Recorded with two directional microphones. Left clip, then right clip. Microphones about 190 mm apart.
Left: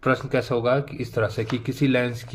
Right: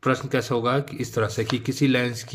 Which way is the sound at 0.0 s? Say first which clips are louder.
Left 1 dB; 10° right (ahead or behind).